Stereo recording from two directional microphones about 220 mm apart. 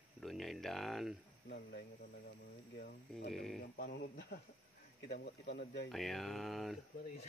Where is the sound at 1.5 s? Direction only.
45° left (ahead or behind).